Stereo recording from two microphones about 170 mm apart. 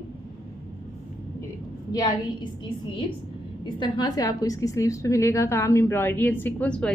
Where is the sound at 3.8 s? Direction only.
25° left (ahead or behind).